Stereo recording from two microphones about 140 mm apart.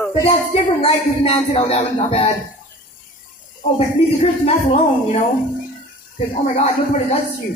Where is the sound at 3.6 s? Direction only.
70° left (ahead or behind).